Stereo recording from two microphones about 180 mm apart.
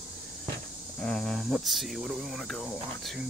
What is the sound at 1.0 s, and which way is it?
Speech, 5° left (ahead or behind).